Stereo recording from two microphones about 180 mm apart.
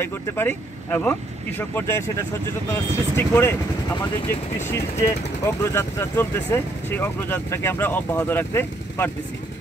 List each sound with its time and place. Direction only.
0.0 s speech: 10° left (ahead or behind)